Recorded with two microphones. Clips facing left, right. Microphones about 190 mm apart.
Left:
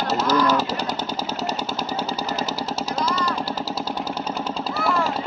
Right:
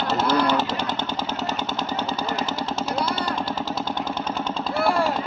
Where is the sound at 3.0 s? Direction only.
35° left (ahead or behind).